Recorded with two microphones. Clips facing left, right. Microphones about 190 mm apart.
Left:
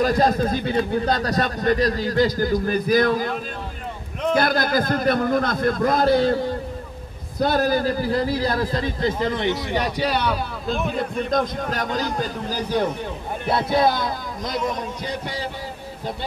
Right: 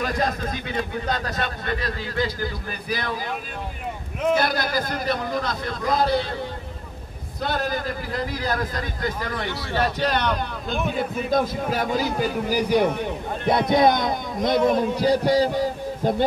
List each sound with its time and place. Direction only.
0.0 s a man's voice: 35° left (ahead or behind)
4.4 s a man's voice: 50° left (ahead or behind)
7.3 s a man's voice: 40° left (ahead or behind); by 14.6 s 20° right (ahead or behind)
15.0 s a man's voice: 35° right (ahead or behind)